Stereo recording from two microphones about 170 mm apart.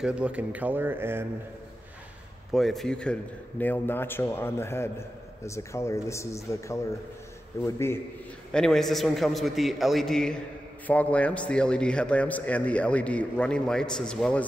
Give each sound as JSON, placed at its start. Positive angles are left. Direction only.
{"t": 0.0, "sound": "speech", "side_deg": -5}
{"t": 2.5, "sound": "a man's voice", "side_deg": 0}
{"t": 8.5, "sound": "a man's voice", "side_deg": 5}